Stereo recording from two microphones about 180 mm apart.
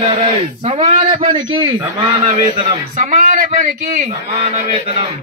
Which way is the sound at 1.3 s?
25° right (ahead or behind).